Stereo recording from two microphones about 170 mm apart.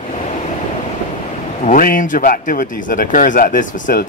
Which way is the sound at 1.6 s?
55° left (ahead or behind).